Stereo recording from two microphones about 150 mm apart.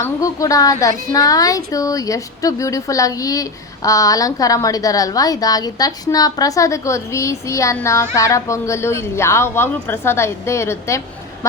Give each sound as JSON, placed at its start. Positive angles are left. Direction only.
{"t": 0.0, "sound": "a woman's voice", "side_deg": 20}